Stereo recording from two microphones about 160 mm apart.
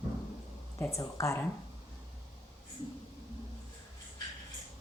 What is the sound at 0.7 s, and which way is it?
Speech, 15° left (ahead or behind).